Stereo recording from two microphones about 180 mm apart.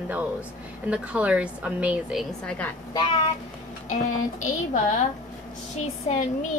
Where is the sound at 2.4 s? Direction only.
5° left (ahead or behind).